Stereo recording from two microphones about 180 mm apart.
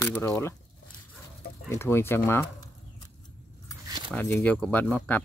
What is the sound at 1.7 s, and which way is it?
Speech, 15° left (ahead or behind).